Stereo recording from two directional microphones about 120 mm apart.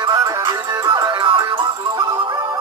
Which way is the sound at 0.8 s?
40° right (ahead or behind).